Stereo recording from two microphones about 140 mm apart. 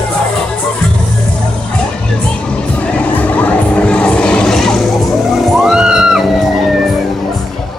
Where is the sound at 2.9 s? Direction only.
10° left (ahead or behind).